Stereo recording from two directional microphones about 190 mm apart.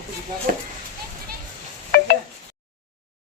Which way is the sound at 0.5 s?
45° right (ahead or behind).